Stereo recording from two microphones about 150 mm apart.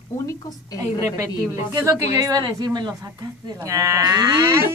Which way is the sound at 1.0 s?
20° right (ahead or behind).